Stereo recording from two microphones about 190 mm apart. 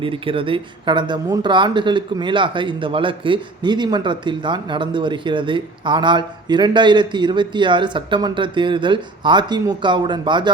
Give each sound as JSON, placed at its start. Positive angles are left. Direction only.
{"t": 0.0, "sound": "speech", "side_deg": -25}